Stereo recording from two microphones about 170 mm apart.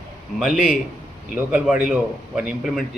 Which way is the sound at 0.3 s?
Centre (ahead or behind).